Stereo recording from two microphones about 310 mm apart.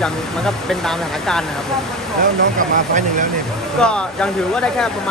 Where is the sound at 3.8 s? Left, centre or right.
Centre.